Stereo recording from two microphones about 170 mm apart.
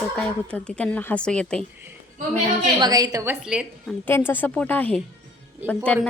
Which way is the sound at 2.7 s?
25° right (ahead or behind).